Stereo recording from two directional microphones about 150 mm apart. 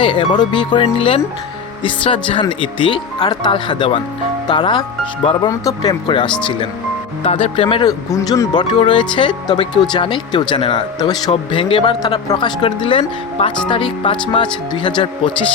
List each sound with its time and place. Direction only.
0.0 s speech: 35° left (ahead or behind)